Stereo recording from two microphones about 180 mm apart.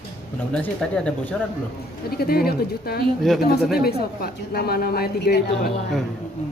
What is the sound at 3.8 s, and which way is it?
A woman's voice, 60° left (ahead or behind).